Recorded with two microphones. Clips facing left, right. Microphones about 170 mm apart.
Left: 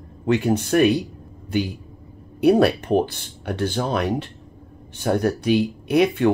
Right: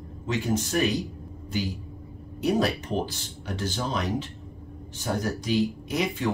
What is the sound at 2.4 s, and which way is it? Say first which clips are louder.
Speech: left 9 dB; 60° left (ahead or behind).